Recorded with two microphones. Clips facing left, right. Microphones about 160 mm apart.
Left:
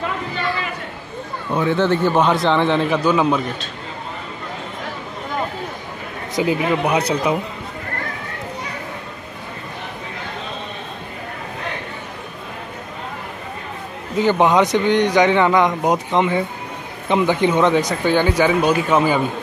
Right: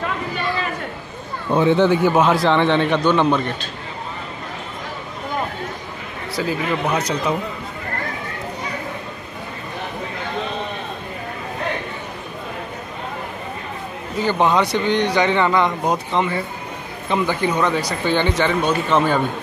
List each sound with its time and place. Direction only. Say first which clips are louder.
1.5 s a man's voice: right 3 dB; 20° right (ahead or behind); by 3.5 s 5° left (ahead or behind)
6.3 s speech: left 4 dB; 20° left (ahead or behind)
14.1 s a man's voice: left 3 dB; 15° left (ahead or behind)